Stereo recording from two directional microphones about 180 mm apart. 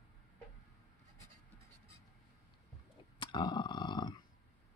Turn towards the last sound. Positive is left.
turn(degrees=25)  # may be behind; listen again after turning